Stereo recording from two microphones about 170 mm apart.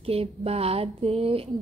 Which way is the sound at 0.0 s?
35° right (ahead or behind).